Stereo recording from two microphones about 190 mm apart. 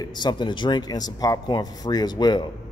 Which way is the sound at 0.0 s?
25° left (ahead or behind).